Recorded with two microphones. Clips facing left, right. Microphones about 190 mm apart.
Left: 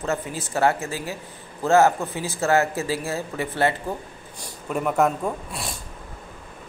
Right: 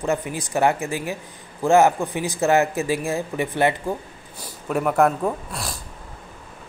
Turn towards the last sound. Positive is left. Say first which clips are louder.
# right 1 dB
turn(degrees=0)  # may be behind; listen again after turning